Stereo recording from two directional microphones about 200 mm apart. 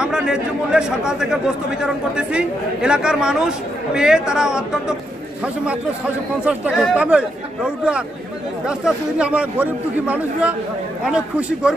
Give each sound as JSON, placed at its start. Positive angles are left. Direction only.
{"t": 0.0, "sound": "speech", "side_deg": -5}
{"t": 6.4, "sound": "a man's voice", "side_deg": -5}